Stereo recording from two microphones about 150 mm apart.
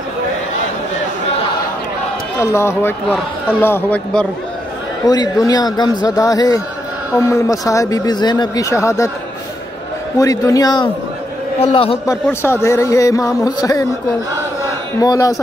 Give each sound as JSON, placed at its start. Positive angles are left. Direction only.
{"t": 2.4, "sound": "a man's voice", "side_deg": 20}
{"t": 5.0, "sound": "speech", "side_deg": 25}
{"t": 10.1, "sound": "speech", "side_deg": 20}
{"t": 11.7, "sound": "a man's voice", "side_deg": 40}
{"t": 12.1, "sound": "speech", "side_deg": 15}
{"t": 15.0, "sound": "speech", "side_deg": 25}